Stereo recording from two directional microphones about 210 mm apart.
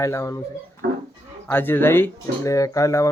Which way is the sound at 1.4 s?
10° left (ahead or behind).